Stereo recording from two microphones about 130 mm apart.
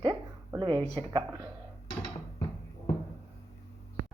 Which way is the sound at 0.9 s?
30° right (ahead or behind).